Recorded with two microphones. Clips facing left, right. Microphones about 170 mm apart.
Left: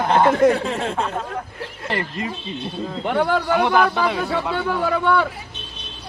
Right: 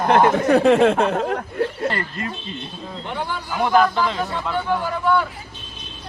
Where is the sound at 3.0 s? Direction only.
65° left (ahead or behind).